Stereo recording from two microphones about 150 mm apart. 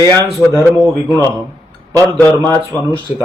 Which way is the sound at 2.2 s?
15° left (ahead or behind).